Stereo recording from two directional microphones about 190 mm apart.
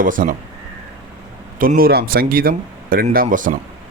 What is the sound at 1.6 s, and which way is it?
Speech, 50° right (ahead or behind).